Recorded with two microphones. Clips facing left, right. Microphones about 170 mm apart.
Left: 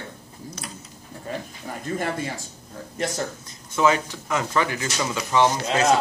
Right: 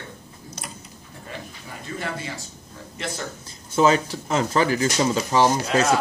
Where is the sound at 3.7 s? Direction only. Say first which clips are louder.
Right 2 dB; 30° right (ahead or behind).